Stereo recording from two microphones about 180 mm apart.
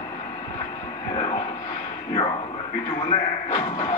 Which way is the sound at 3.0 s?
25° left (ahead or behind).